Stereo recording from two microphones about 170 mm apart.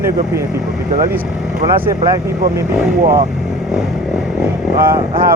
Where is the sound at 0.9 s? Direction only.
55° right (ahead or behind).